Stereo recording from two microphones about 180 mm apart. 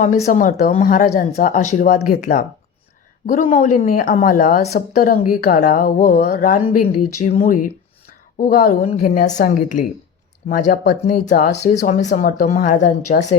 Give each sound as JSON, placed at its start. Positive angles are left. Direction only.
{"t": 0.0, "sound": "speech", "side_deg": 45}
{"t": 3.5, "sound": "speech", "side_deg": 50}
{"t": 6.6, "sound": "speech", "side_deg": 30}
{"t": 7.4, "sound": "speech", "side_deg": 50}